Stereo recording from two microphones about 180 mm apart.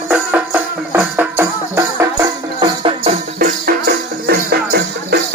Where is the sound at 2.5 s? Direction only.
30° right (ahead or behind).